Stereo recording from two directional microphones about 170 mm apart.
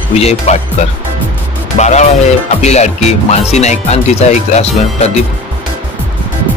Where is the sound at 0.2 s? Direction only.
40° left (ahead or behind).